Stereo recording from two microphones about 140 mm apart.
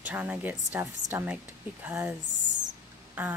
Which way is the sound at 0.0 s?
10° right (ahead or behind).